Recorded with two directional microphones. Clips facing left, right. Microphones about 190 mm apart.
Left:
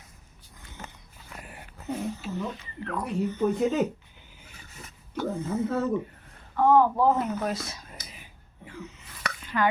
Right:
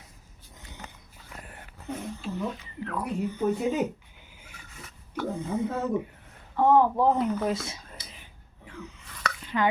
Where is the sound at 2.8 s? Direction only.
10° right (ahead or behind).